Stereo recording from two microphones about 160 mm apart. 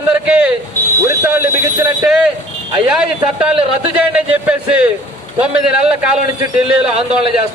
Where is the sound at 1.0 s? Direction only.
15° right (ahead or behind).